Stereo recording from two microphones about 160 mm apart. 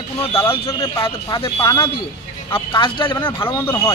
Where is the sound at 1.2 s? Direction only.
25° left (ahead or behind).